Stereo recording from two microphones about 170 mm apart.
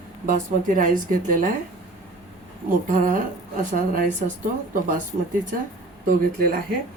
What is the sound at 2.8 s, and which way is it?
A woman's voice, 50° right (ahead or behind).